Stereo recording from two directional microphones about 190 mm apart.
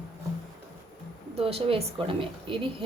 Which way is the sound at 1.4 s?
30° right (ahead or behind).